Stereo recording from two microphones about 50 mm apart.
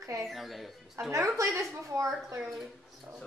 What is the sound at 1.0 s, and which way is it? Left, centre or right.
A child's voice, right.